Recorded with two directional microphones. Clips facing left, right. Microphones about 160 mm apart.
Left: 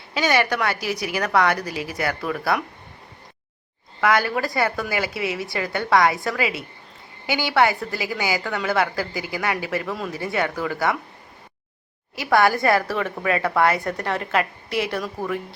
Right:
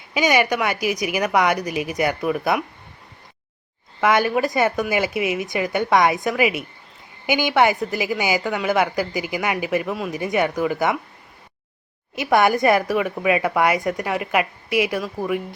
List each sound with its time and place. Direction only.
0.1 s a woman's voice: 15° right (ahead or behind)
4.0 s a woman's voice: 20° right (ahead or behind)
12.1 s a woman's voice: 20° right (ahead or behind)